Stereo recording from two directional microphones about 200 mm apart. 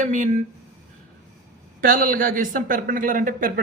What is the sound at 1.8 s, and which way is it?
A man's voice, 45° right (ahead or behind).